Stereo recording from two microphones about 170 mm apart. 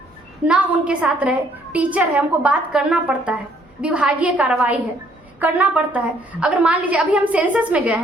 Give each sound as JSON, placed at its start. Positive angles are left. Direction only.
{"t": 0.4, "sound": "a woman's voice", "side_deg": -10}